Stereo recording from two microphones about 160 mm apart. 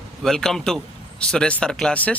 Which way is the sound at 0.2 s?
5° left (ahead or behind).